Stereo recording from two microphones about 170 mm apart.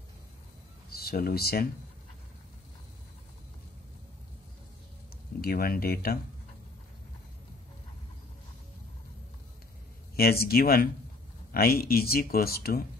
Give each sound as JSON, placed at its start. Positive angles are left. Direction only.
{"t": 0.8, "sound": "speech", "side_deg": 65}
{"t": 5.4, "sound": "speech", "side_deg": 60}
{"t": 10.1, "sound": "speech", "side_deg": 65}